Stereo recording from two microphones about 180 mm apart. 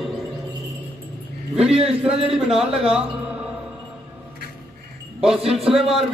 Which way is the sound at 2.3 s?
Centre (ahead or behind).